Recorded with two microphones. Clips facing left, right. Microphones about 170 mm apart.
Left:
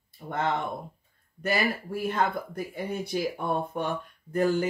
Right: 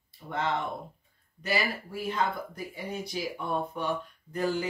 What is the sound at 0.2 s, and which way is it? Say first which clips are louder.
Speech: left 2 dB; 45° left (ahead or behind).